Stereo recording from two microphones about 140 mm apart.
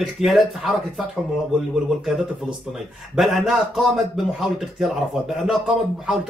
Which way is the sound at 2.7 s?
Centre (ahead or behind).